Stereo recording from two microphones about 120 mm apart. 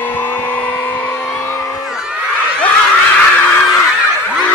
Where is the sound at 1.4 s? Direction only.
25° left (ahead or behind).